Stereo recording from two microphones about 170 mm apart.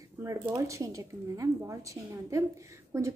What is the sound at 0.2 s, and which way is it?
A woman's voice, 15° right (ahead or behind).